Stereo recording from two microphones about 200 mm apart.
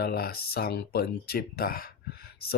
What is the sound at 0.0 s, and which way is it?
Speech, 50° left (ahead or behind).